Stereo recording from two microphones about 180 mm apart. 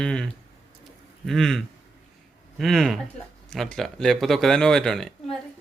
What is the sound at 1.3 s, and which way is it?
Speech, centre (ahead or behind).